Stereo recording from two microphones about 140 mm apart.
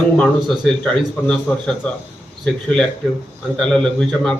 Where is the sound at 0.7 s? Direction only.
5° left (ahead or behind).